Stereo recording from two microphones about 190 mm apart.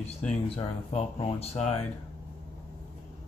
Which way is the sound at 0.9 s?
35° left (ahead or behind).